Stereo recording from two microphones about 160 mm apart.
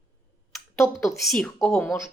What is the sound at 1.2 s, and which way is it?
Speech, centre (ahead or behind).